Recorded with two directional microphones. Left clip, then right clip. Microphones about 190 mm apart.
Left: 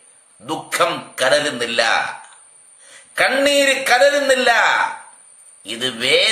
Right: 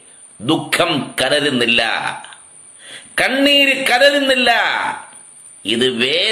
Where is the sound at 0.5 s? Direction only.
15° left (ahead or behind).